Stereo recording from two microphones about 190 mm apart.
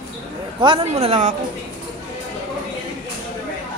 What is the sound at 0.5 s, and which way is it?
Speech, 25° right (ahead or behind).